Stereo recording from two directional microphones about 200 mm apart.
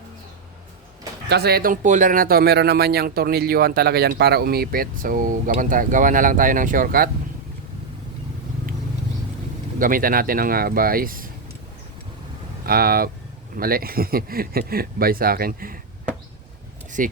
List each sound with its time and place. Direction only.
1.3 s speech: 50° right (ahead or behind)
9.7 s speech: 45° right (ahead or behind)
12.6 s speech: 50° right (ahead or behind)
17.0 s speech: 40° right (ahead or behind)